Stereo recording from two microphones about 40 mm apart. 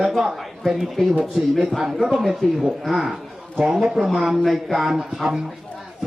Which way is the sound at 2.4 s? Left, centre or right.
Centre.